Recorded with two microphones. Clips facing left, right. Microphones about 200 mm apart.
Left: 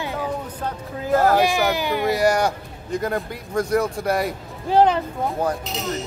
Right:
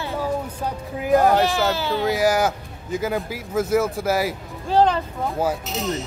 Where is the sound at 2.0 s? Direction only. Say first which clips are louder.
Even; centre (ahead or behind).